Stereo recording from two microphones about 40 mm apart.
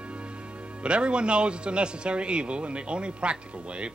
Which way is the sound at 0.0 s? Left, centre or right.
Right.